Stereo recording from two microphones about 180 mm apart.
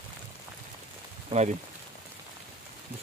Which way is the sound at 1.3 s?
40° right (ahead or behind).